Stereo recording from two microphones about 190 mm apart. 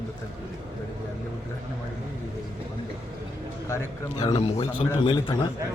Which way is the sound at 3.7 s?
15° left (ahead or behind).